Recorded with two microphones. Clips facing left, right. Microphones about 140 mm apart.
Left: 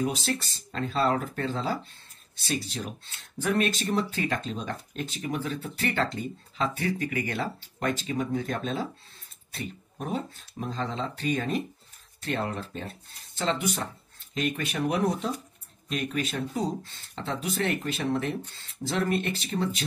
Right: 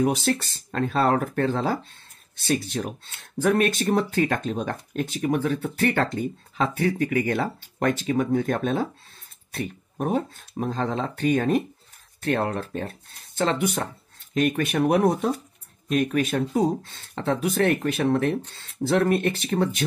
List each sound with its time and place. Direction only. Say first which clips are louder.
0.0 s speech: right 6 dB; 60° right (ahead or behind)